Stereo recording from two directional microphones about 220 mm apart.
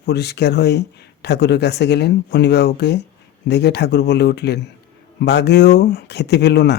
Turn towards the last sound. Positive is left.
turn(degrees=50)  # may be behind; listen again after turning